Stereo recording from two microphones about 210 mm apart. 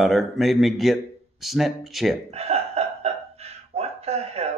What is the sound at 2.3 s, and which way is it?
Hiccup, 30° right (ahead or behind).